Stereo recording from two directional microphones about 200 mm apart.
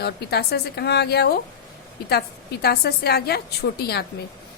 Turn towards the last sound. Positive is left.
turn(degrees=55)  # may be behind; listen again after turning